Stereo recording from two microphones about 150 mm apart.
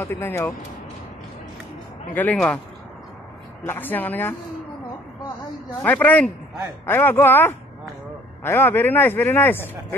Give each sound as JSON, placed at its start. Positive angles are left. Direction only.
{"t": 0.0, "sound": "speech", "side_deg": 15}
{"t": 2.3, "sound": "speech", "side_deg": 10}
{"t": 3.6, "sound": "speech", "side_deg": 15}
{"t": 5.8, "sound": "speech", "side_deg": 10}